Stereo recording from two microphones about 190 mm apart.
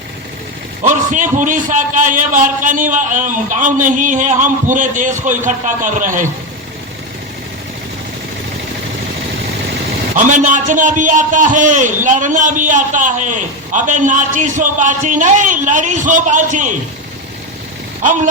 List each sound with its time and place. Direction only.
0.8 s a man's voice: 40° right (ahead or behind)
10.2 s a man's voice: 40° right (ahead or behind)